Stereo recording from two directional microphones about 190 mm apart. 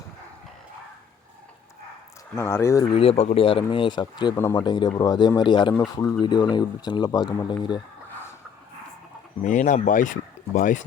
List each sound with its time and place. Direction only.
2.3 s speech: 15° left (ahead or behind)
2.9 s speech: 30° left (ahead or behind)
9.4 s speech: 40° left (ahead or behind)